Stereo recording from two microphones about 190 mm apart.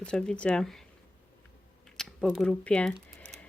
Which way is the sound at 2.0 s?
Centre (ahead or behind).